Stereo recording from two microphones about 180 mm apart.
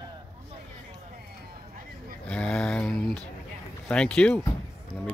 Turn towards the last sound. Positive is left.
turn(degrees=5)  # may be behind; listen again after turning